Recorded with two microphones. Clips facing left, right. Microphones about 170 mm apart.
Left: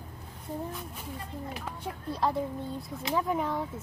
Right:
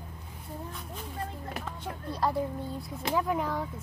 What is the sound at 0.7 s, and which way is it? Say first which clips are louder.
Speech: left 1 dB; 5° left (ahead or behind).